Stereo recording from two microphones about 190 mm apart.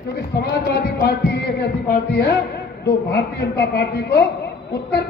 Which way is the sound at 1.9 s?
60° left (ahead or behind).